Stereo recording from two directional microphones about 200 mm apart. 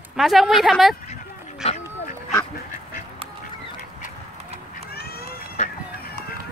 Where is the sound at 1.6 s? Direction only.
30° left (ahead or behind).